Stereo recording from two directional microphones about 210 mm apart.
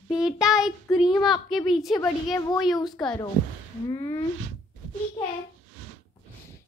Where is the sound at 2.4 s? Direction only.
15° left (ahead or behind).